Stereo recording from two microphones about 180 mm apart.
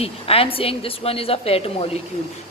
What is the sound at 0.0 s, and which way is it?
A woman's voice, 30° left (ahead or behind).